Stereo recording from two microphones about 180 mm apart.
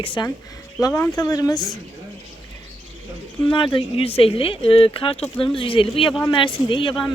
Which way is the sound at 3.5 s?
25° left (ahead or behind).